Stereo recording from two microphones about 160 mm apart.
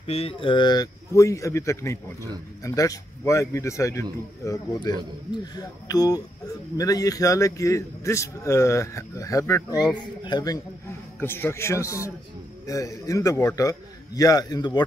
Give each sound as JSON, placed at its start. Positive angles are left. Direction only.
{"t": 0.0, "sound": "a man's voice", "side_deg": 35}
{"t": 11.1, "sound": "a man's voice", "side_deg": 15}